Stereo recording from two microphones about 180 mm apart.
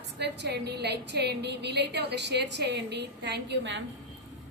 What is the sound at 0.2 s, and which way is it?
A woman's voice, 65° right (ahead or behind).